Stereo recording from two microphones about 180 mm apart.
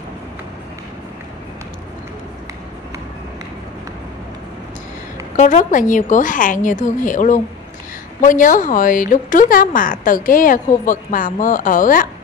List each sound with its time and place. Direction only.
5.3 s speech: 40° left (ahead or behind)